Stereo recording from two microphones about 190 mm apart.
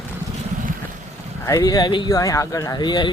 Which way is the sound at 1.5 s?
20° left (ahead or behind).